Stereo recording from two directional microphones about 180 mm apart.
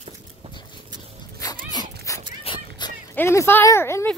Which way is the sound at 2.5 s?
30° left (ahead or behind).